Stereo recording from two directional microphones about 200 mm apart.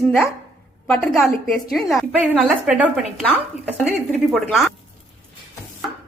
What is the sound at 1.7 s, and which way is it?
A woman's voice, centre (ahead or behind).